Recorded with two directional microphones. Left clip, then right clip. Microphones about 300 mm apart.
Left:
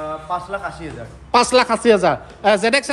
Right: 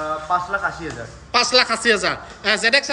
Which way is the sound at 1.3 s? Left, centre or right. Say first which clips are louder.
Left 2 dB; centre.